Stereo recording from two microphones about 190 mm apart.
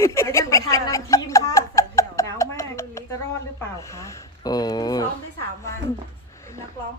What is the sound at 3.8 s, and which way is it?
Speech, 15° left (ahead or behind).